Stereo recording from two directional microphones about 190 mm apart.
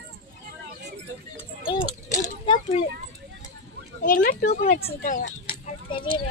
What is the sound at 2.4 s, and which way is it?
Children playing, 25° left (ahead or behind).